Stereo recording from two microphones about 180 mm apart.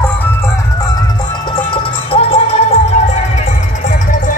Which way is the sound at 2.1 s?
35° left (ahead or behind).